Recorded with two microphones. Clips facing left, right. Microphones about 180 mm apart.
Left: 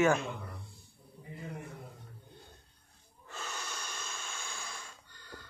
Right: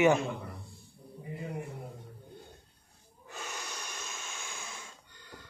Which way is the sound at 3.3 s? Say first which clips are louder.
Right 1 dB; 15° right (ahead or behind).